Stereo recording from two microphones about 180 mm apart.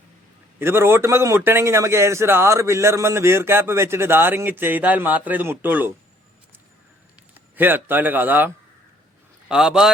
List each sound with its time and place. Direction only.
0.6 s a man's voice: 15° right (ahead or behind)
7.5 s a man's voice: 10° right (ahead or behind)